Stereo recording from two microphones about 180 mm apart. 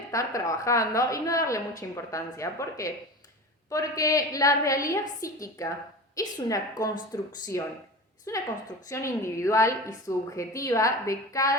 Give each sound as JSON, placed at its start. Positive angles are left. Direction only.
{"t": 0.1, "sound": "a woman's voice", "side_deg": 15}